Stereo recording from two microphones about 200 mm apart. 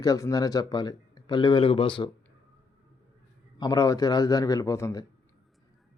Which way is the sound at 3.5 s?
20° left (ahead or behind).